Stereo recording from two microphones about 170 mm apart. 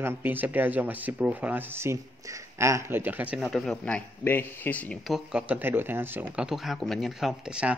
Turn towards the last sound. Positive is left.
turn(degrees=-5)  # may be behind; listen again after turning